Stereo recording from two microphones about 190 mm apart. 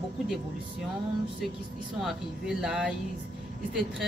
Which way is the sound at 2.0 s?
Centre (ahead or behind).